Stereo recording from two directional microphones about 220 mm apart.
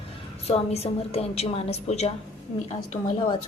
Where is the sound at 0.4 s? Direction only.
30° left (ahead or behind).